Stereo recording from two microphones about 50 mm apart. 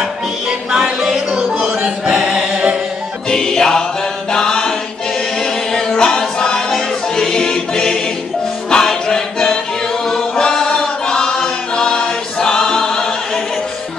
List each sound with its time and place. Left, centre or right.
0.0 s music: centre
1.3 s choir: centre
3.3 s music: centre
4.3 s a sound: centre
5.4 s music: centre
10.0 s choir: centre